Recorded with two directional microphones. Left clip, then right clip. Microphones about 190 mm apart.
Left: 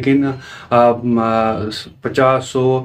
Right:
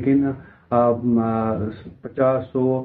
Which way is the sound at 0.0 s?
20° left (ahead or behind).